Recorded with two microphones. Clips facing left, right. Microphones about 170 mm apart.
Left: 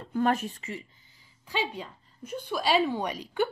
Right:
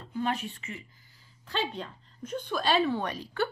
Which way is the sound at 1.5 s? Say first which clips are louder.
Left 1 dB; 10° left (ahead or behind).